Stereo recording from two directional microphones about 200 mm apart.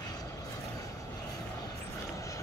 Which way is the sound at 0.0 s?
20° left (ahead or behind).